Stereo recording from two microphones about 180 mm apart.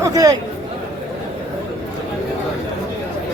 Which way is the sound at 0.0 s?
20° right (ahead or behind).